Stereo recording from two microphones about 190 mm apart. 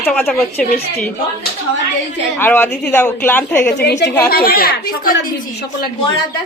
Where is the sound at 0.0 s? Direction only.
10° left (ahead or behind).